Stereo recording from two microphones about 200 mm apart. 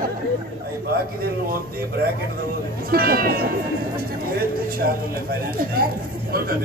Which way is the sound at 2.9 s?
50° right (ahead or behind).